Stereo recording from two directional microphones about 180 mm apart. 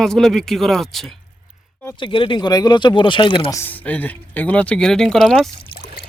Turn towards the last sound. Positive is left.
turn(degrees=0)  # may be behind; listen again after turning